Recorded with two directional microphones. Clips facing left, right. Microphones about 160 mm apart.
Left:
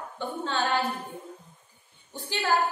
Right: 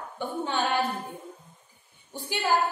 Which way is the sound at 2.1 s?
10° right (ahead or behind).